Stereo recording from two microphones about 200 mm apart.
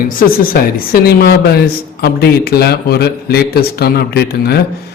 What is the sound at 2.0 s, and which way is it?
A man's voice, 55° left (ahead or behind).